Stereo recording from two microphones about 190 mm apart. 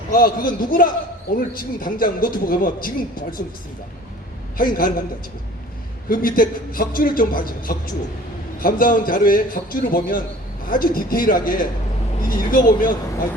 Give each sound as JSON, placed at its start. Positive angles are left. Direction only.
{"t": 0.1, "sound": "speech", "side_deg": 50}
{"t": 4.5, "sound": "speech", "side_deg": 50}
{"t": 6.1, "sound": "speech", "side_deg": 50}